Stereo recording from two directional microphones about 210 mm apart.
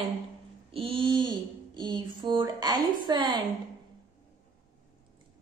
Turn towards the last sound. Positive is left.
turn(degrees=-20)  # may be behind; listen again after turning